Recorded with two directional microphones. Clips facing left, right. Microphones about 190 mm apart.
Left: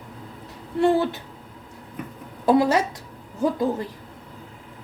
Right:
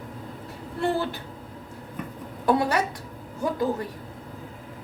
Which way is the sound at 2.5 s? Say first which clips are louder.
Left 4 dB; 25° left (ahead or behind).